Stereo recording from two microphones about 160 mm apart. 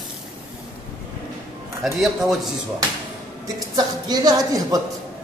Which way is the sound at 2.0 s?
Centre (ahead or behind).